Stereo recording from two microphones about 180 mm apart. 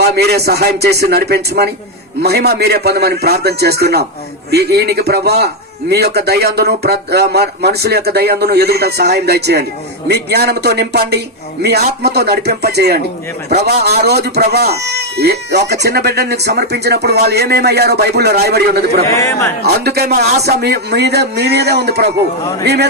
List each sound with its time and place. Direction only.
0.2 s speech: 65° right (ahead or behind)
19.0 s a man's voice: 15° left (ahead or behind)
19.6 s a man's voice: 65° right (ahead or behind)